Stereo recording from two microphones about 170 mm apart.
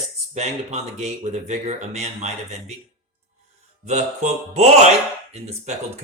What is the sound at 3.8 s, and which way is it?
Speech, 40° right (ahead or behind).